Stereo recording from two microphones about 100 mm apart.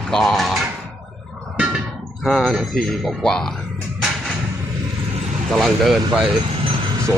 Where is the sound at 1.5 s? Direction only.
10° right (ahead or behind).